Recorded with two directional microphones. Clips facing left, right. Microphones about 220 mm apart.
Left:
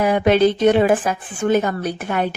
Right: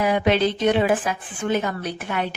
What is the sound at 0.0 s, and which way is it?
A woman's voice, 50° left (ahead or behind).